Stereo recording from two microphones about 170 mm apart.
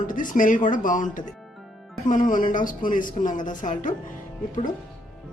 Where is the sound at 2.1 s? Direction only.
50° left (ahead or behind).